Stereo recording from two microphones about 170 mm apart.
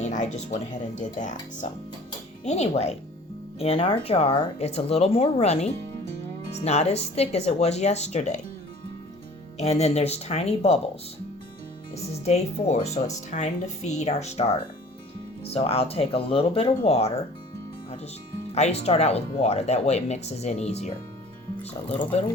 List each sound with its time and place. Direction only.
0.0 s speech: 45° left (ahead or behind)
9.6 s speech: 40° left (ahead or behind)
12.2 s speech: 40° left (ahead or behind)
18.5 s speech: 40° left (ahead or behind)